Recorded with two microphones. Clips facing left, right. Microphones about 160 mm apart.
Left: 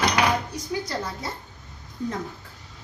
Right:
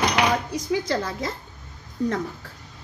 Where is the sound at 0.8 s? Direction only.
90° right.